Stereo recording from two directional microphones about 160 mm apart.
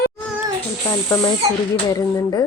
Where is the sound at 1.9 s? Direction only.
25° left (ahead or behind).